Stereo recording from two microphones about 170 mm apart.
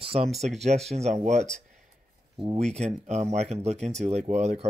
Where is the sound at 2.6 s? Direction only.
40° right (ahead or behind).